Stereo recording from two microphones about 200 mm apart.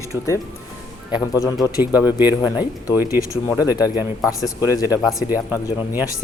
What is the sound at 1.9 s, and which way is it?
Speech, 10° right (ahead or behind).